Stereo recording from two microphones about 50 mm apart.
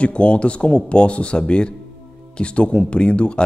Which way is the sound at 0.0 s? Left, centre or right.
Left.